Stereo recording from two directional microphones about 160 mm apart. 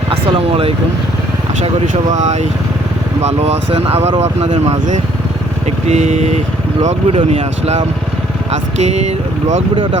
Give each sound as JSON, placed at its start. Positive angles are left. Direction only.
{"t": 0.1, "sound": "speech", "side_deg": -35}
{"t": 1.6, "sound": "speech", "side_deg": -50}